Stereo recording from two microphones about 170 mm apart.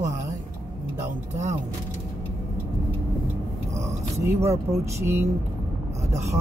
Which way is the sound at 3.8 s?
15° right (ahead or behind).